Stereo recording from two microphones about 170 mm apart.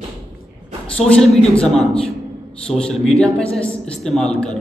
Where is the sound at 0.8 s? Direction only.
5° left (ahead or behind).